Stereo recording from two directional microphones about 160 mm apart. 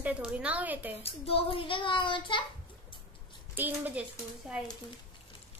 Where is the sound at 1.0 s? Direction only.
35° left (ahead or behind).